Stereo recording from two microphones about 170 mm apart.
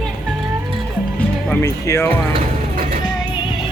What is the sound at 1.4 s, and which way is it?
Speech, 15° left (ahead or behind).